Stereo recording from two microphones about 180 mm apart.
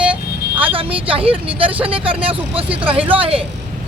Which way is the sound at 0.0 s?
10° right (ahead or behind).